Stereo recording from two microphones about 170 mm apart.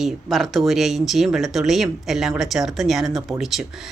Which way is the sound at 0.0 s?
Centre (ahead or behind).